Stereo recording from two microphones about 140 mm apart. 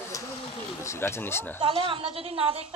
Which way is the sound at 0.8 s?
15° left (ahead or behind).